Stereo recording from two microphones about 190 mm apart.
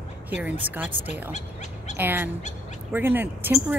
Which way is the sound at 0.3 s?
10° right (ahead or behind).